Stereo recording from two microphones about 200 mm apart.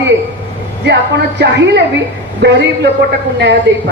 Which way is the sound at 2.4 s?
55° right (ahead or behind).